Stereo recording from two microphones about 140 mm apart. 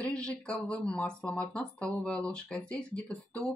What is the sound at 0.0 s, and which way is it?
Speech, 5° left (ahead or behind).